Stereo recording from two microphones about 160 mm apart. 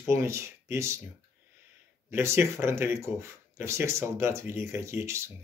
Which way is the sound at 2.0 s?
15° right (ahead or behind).